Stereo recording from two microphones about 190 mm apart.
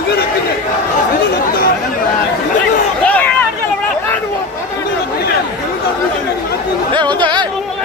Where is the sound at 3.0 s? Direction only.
10° left (ahead or behind).